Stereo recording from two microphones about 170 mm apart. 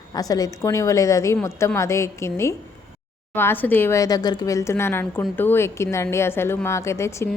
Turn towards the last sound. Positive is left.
turn(degrees=15)  # may be behind; listen again after turning